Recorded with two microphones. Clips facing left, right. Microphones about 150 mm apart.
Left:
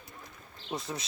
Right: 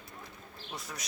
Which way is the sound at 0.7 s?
25° left (ahead or behind).